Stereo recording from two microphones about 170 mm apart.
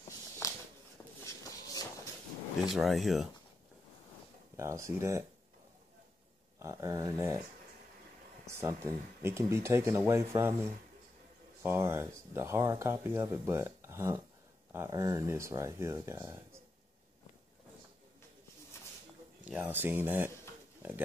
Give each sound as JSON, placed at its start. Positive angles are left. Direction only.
{"t": 0.4, "sound": "a sound", "side_deg": 15}
{"t": 1.2, "sound": "shuffle", "side_deg": 20}
{"t": 2.7, "sound": "speech", "side_deg": 0}
{"t": 4.6, "sound": "speech", "side_deg": -15}
{"t": 6.6, "sound": "speech", "side_deg": -15}
{"t": 8.5, "sound": "speech", "side_deg": -15}
{"t": 19.4, "sound": "speech", "side_deg": -10}